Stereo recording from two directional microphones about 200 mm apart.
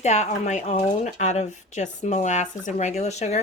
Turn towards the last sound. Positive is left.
turn(degrees=35)  # may be behind; listen again after turning